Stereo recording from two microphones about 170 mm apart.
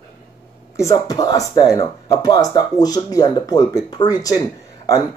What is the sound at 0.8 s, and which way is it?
Speech, 20° left (ahead or behind).